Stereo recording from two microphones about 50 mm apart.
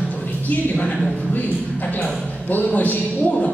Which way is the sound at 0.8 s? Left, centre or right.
Left.